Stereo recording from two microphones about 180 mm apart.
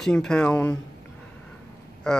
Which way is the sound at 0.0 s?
5° left (ahead or behind).